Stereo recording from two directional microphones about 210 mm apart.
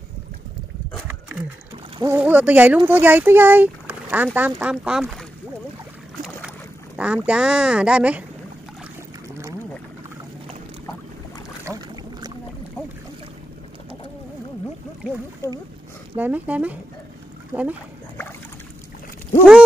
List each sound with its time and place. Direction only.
2.0 s speech: 10° right (ahead or behind)
7.0 s speech: 5° right (ahead or behind)
11.6 s boat: 15° right (ahead or behind)
16.2 s speech: 5° right (ahead or behind)